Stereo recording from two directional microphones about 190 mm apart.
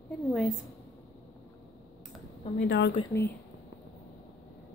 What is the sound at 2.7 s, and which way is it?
Speech, 65° left (ahead or behind).